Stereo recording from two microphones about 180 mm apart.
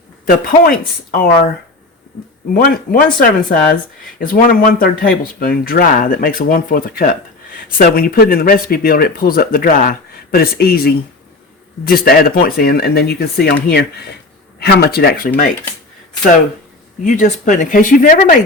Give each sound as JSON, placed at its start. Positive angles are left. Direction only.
{"t": 0.3, "sound": "speech", "side_deg": 55}
{"t": 2.5, "sound": "speech", "side_deg": 55}
{"t": 17.1, "sound": "speech", "side_deg": 45}